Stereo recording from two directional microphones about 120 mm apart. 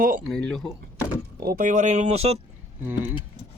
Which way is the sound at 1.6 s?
75° right (ahead or behind).